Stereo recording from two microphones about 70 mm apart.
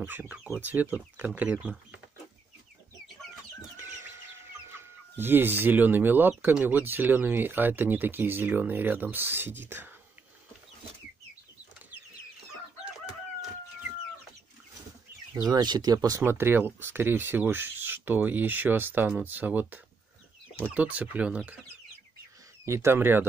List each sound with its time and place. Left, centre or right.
0.0 s speech: right
4.1 s chicken: right
6.5 s speech: right
15.4 s speech: right
16.2 s speech: right
22.7 s speech: right
22.9 s speech: right